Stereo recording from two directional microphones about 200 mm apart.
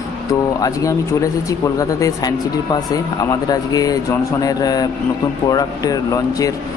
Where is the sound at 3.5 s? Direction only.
20° left (ahead or behind).